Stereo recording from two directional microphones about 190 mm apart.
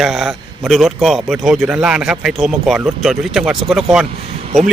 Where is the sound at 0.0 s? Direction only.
Centre (ahead or behind).